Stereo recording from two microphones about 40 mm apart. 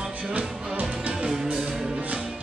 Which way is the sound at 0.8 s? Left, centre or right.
Centre.